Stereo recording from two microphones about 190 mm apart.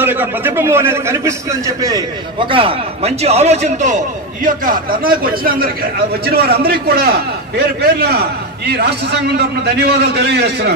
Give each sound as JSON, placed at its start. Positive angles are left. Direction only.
{"t": 0.0, "sound": "a man's voice", "side_deg": -10}